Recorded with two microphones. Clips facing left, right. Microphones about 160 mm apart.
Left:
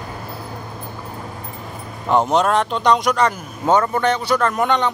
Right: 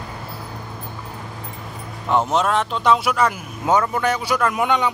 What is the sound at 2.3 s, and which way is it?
Speech, centre (ahead or behind).